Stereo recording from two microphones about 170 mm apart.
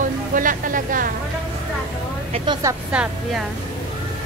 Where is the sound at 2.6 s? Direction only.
20° right (ahead or behind).